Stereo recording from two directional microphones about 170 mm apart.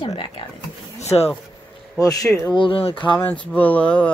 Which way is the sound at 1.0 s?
40° left (ahead or behind).